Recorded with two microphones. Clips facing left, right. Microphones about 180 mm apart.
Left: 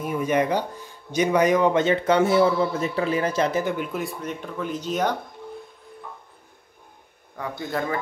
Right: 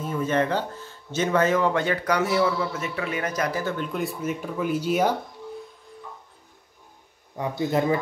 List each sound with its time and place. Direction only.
0.0 s speech: 15° left (ahead or behind)
3.7 s speech: 5° left (ahead or behind)
7.4 s speech: 20° right (ahead or behind)